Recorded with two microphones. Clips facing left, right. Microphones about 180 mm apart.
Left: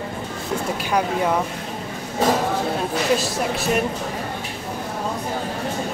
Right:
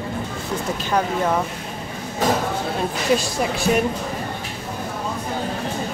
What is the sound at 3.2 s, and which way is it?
Speech, centre (ahead or behind).